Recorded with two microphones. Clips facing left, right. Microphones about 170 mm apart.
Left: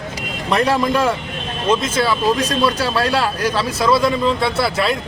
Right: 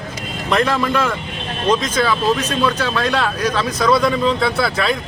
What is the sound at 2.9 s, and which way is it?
A man's voice, 10° left (ahead or behind).